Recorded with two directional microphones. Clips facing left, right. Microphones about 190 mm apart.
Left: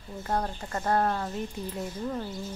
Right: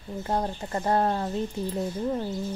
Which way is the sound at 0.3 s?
20° right (ahead or behind).